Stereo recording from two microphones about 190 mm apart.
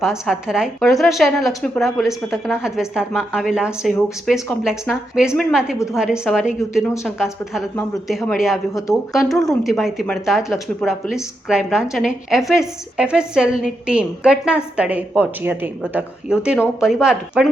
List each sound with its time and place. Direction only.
0.0 s speech: centre (ahead or behind)